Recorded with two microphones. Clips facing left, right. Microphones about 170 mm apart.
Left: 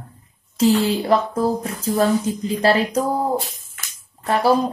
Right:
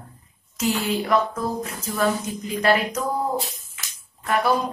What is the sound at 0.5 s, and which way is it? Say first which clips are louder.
Speech: left 7 dB; 30° left (ahead or behind).